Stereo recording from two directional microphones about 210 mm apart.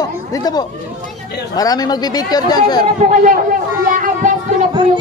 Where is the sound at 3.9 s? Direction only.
40° right (ahead or behind).